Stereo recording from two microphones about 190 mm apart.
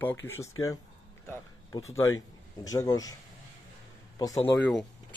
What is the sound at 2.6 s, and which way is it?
Speech, 20° left (ahead or behind).